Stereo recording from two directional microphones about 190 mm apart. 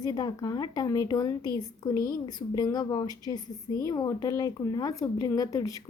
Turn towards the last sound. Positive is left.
turn(degrees=15)  # may be behind; listen again after turning